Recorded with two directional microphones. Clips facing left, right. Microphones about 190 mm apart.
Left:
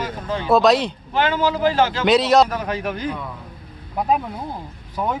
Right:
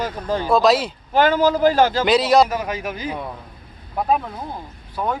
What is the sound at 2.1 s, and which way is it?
Speech, centre (ahead or behind).